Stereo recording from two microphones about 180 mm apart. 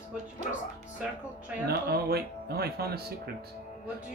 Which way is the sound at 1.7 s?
60° right (ahead or behind).